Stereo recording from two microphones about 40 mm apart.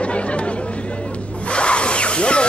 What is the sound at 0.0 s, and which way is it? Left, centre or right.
Chatter, left.